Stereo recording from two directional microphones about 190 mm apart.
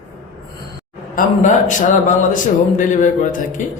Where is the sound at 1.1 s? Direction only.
40° left (ahead or behind).